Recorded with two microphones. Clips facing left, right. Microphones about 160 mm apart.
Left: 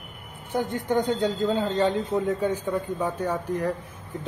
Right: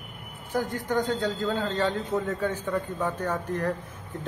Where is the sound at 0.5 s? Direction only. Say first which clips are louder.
Left 2 dB; 20° left (ahead or behind).